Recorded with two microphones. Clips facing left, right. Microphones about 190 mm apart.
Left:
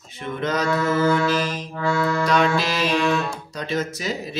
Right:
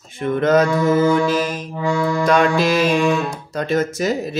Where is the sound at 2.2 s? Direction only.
50° right (ahead or behind).